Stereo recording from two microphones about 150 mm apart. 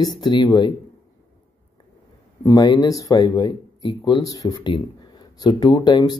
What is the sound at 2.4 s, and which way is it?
Speech, 25° left (ahead or behind).